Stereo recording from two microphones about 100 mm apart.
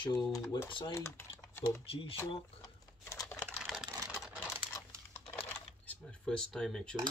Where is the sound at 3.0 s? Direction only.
30° left (ahead or behind).